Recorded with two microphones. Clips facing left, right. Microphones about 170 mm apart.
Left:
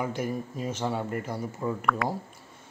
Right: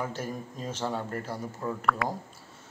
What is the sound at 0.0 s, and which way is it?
Speech, 10° left (ahead or behind).